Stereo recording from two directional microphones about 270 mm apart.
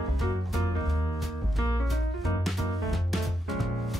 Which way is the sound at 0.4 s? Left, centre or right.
Centre.